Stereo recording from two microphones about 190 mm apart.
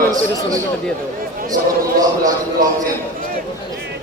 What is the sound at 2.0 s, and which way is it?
Speech, 20° right (ahead or behind).